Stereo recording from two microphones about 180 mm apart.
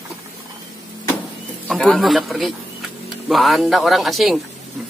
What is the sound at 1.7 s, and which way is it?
Speech, centre (ahead or behind).